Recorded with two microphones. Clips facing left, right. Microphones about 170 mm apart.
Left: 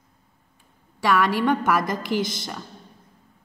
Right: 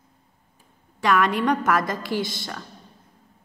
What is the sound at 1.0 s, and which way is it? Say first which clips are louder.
Speech: even; centre (ahead or behind).